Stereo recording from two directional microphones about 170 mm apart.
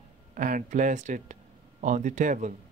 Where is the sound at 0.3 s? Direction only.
50° right (ahead or behind).